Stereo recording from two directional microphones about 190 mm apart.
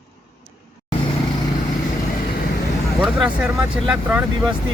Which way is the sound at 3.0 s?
5° right (ahead or behind).